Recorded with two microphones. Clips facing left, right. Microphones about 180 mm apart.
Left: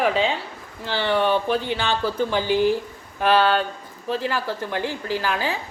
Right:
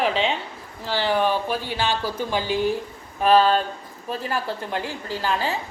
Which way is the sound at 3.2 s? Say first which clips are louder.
Right 1 dB; 70° left (ahead or behind).